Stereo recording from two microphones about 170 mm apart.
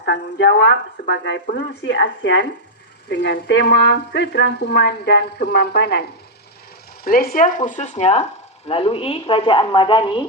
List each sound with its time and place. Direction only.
0.0 s speech: 90° left; by 6.1 s 70° left (ahead or behind)
7.0 s speech: 60° left (ahead or behind); by 10.2 s 30° left (ahead or behind)